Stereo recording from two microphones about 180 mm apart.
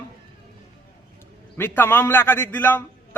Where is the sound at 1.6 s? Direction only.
10° left (ahead or behind).